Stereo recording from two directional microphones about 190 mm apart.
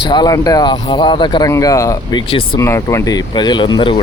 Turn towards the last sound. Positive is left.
turn(degrees=25)  # may be behind; listen again after turning